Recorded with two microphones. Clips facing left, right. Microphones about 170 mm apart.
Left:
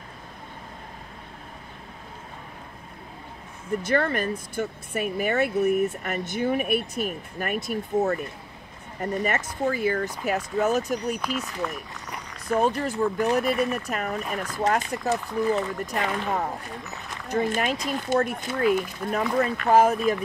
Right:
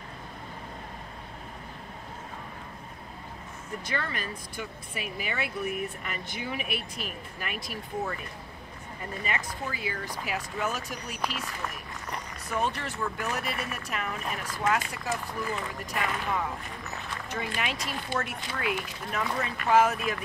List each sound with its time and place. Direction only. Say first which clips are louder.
3.8 s speech: left 10 dB; 50° left (ahead or behind)
12.5 s speech: left 7 dB; 40° left (ahead or behind)